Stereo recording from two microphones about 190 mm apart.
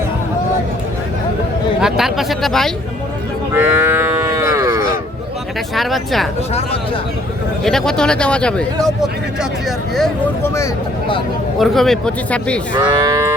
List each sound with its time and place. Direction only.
1.8 s a man's voice: centre (ahead or behind)
3.5 s cattle: 10° right (ahead or behind)
5.7 s a man's voice: centre (ahead or behind)
6.5 s speech: 30° left (ahead or behind)
7.6 s a man's voice: centre (ahead or behind)
10.4 s speech: 15° left (ahead or behind)
11.6 s a man's voice: centre (ahead or behind)
13.0 s moo: 15° right (ahead or behind)